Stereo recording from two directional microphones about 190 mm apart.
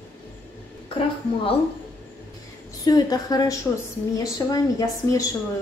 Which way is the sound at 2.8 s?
20° left (ahead or behind).